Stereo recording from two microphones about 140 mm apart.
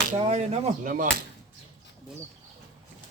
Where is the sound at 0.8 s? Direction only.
75° right (ahead or behind).